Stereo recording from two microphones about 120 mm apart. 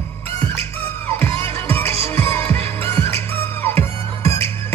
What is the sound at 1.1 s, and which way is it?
Music, 20° left (ahead or behind).